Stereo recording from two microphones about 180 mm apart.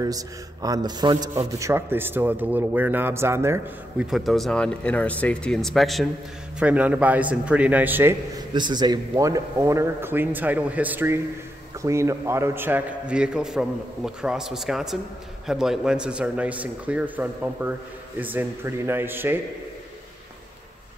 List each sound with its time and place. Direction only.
0.0 s a man's voice: 20° right (ahead or behind)
4.1 s a man's voice: centre (ahead or behind)
8.5 s a man's voice: 25° right (ahead or behind)